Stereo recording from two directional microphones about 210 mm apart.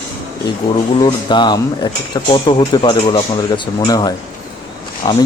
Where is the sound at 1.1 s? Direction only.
20° left (ahead or behind).